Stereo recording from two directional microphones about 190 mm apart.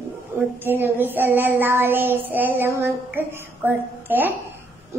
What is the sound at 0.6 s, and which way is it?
A child's voice, 10° right (ahead or behind).